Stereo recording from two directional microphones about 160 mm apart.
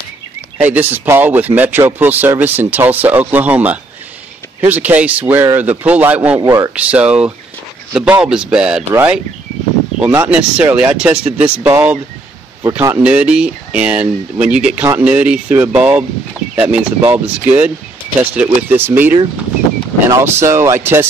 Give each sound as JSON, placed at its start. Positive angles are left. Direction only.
{"t": 0.6, "sound": "speech", "side_deg": -10}
{"t": 6.7, "sound": "speech", "side_deg": -5}